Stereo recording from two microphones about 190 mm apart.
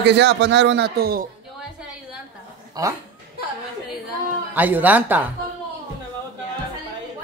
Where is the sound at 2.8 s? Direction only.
20° right (ahead or behind).